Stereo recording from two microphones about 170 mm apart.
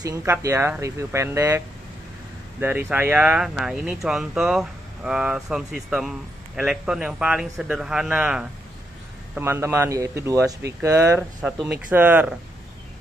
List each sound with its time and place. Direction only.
0.0 s speech: 15° right (ahead or behind)
2.6 s speech: 10° right (ahead or behind)
11.1 s speech: centre (ahead or behind)